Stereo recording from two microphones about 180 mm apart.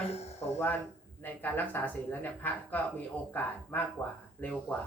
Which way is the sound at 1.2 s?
10° left (ahead or behind).